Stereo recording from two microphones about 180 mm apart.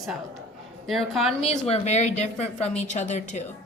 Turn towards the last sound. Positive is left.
turn(degrees=40)  # may be behind; listen again after turning